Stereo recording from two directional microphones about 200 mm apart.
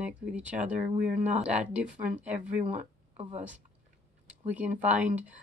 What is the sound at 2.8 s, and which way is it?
Speech, 35° right (ahead or behind).